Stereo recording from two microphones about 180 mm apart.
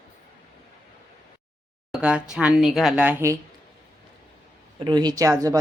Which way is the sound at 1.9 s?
5° right (ahead or behind).